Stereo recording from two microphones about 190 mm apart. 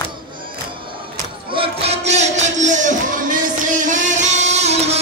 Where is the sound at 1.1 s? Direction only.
30° right (ahead or behind).